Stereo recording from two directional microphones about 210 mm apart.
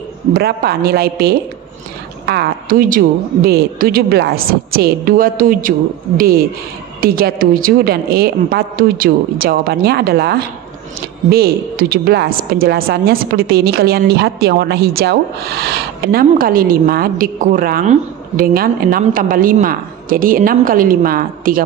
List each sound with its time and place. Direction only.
0.3 s a woman's voice: 45° right (ahead or behind)